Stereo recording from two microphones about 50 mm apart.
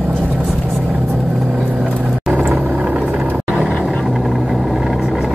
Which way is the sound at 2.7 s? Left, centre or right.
Right.